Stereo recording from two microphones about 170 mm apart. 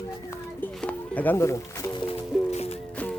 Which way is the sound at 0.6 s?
10° left (ahead or behind).